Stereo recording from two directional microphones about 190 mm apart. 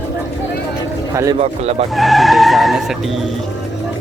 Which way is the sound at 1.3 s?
35° right (ahead or behind).